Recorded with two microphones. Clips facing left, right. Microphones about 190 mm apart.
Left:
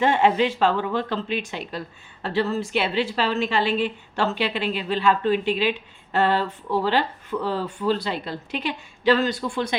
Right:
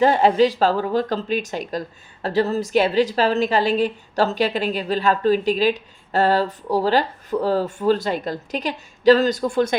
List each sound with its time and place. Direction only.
0.0 s a woman's voice: 35° right (ahead or behind)